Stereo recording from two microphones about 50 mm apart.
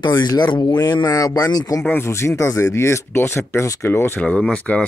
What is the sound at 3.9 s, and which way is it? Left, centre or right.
Speech, left.